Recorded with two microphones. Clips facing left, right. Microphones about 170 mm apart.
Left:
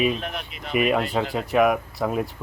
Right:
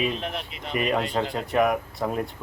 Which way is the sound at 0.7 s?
5° left (ahead or behind).